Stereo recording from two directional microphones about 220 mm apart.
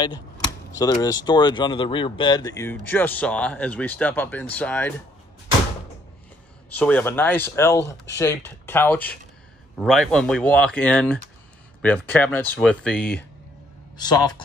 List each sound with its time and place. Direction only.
0.7 s speech: 15° left (ahead or behind)
6.8 s speech: 10° left (ahead or behind)
13.9 s speech: 20° left (ahead or behind)